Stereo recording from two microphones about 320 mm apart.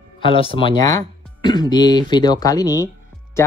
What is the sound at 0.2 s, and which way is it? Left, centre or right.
Speech, centre.